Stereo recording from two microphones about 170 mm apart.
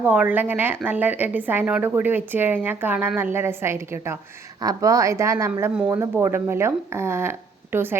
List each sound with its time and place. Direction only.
0.0 s speech: 10° right (ahead or behind)